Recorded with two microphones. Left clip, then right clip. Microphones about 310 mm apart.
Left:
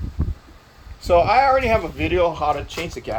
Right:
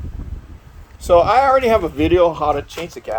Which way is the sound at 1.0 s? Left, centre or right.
Right.